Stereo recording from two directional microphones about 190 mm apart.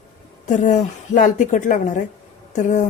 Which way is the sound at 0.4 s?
40° left (ahead or behind).